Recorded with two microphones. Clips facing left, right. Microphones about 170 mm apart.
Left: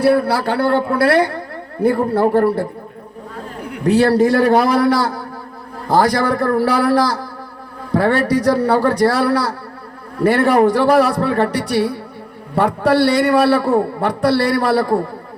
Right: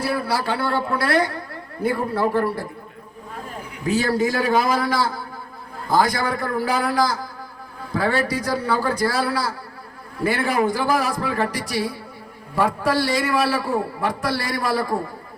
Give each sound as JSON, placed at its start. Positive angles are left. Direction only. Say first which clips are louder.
{"t": 0.0, "sound": "a man's voice", "louder": "left 9 dB", "side_deg": 60}